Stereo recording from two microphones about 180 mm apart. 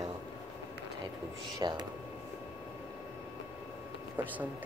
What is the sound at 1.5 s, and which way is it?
Speech, 25° right (ahead or behind).